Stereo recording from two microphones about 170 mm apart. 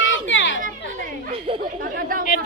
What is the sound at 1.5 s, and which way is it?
Chatter, 30° right (ahead or behind).